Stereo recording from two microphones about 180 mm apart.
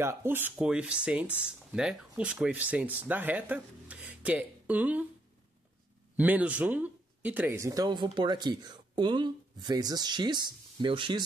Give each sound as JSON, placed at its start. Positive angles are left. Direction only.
{"t": 0.0, "sound": "speech", "side_deg": -15}
{"t": 6.1, "sound": "speech", "side_deg": -10}